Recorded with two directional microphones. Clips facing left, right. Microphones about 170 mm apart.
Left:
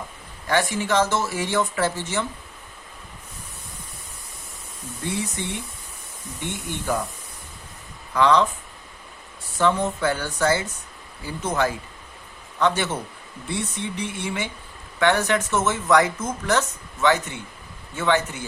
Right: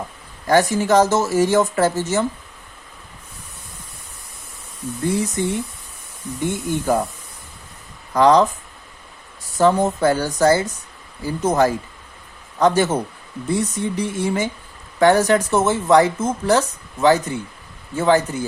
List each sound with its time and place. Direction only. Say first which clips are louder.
0.4 s speech: right 7 dB; 40° right (ahead or behind)
5.0 s speech: right 8 dB; 40° right (ahead or behind)
8.1 s speech: right 5 dB; 40° right (ahead or behind)
9.6 s a man's voice: right 5 dB; 40° right (ahead or behind)